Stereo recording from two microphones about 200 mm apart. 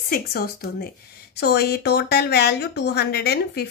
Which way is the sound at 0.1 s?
50° left (ahead or behind).